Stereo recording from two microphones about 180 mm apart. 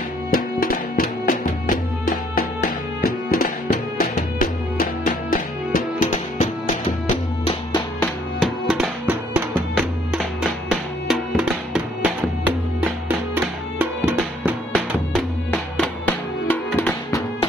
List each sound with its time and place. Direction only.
0.3 s music: 55° left (ahead or behind)
8.4 s music: centre (ahead or behind)
15.1 s music: 10° left (ahead or behind)